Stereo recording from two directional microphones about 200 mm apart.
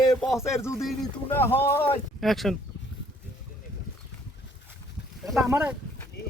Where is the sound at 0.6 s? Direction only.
15° left (ahead or behind).